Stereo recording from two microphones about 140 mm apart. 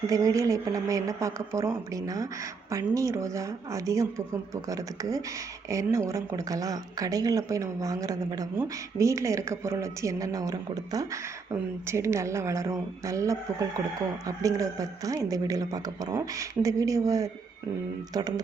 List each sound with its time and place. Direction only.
0.1 s speech: 25° right (ahead or behind)